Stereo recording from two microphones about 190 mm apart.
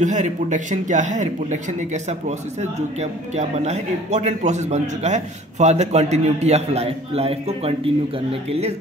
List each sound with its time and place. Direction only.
0.0 s a man's voice: 40° right (ahead or behind)